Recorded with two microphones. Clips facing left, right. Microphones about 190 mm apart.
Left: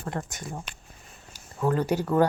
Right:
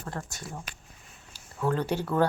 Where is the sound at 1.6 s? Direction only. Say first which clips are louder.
Left 3 dB; 10° left (ahead or behind).